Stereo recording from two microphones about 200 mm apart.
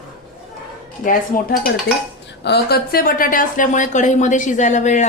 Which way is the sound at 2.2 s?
55° left (ahead or behind).